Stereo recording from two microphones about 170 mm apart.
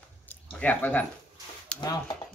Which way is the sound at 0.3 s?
10° left (ahead or behind).